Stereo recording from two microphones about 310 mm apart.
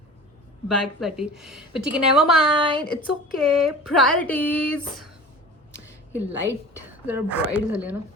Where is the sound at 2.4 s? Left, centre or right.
Centre.